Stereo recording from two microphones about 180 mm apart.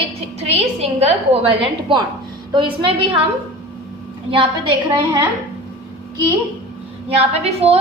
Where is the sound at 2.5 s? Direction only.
30° right (ahead or behind).